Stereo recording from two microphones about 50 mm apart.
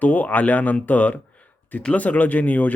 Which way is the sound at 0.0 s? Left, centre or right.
Left.